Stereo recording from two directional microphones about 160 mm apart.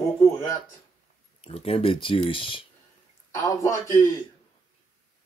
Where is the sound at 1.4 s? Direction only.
40° left (ahead or behind).